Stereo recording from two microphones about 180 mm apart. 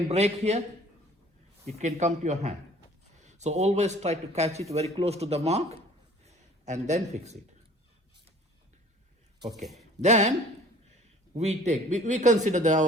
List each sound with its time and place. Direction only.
0.1 s a man's voice: 35° right (ahead or behind)
1.8 s a man's voice: 40° right (ahead or behind)
6.2 s a sound: 40° right (ahead or behind)
9.7 s speech: 40° right (ahead or behind)
11.3 s a man's voice: 40° right (ahead or behind)